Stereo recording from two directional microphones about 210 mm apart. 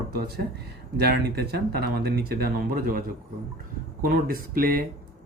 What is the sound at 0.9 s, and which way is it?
Speech, 50° right (ahead or behind).